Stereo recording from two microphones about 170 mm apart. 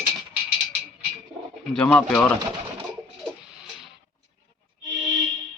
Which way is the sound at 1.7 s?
5° left (ahead or behind).